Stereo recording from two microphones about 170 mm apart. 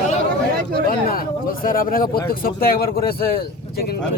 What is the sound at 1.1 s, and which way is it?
Speech, 55° left (ahead or behind).